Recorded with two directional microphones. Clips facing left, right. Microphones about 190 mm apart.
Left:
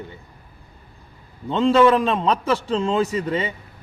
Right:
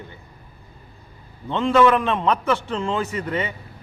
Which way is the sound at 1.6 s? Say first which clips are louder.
Left 2 dB; 30° left (ahead or behind).